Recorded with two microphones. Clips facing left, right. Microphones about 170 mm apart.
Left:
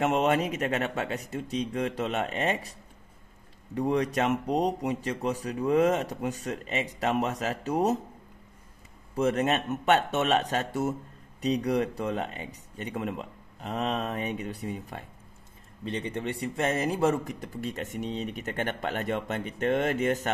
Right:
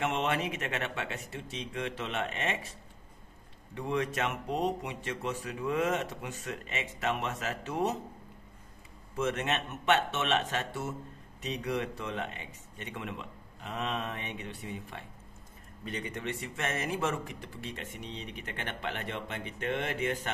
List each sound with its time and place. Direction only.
0.0 s speech: 40° left (ahead or behind)
3.7 s speech: 40° left (ahead or behind)
9.1 s speech: 40° left (ahead or behind)
15.8 s speech: 30° left (ahead or behind)